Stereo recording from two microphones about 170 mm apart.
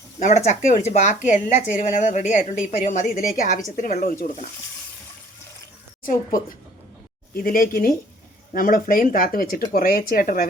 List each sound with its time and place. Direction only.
0.2 s a woman's voice: 45° left (ahead or behind)
6.0 s speech: 55° left (ahead or behind)